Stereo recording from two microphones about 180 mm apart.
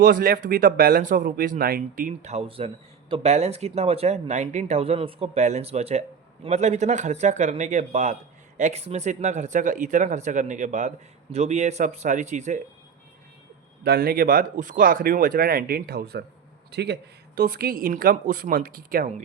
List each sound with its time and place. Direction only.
0.0 s speech: 50° right (ahead or behind)
13.8 s speech: 60° right (ahead or behind)